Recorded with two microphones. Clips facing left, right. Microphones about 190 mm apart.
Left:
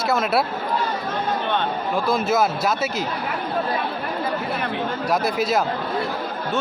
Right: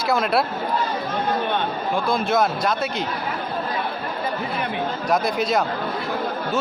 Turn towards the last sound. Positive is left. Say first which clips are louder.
# even
turn(degrees=5)  # may be behind; listen again after turning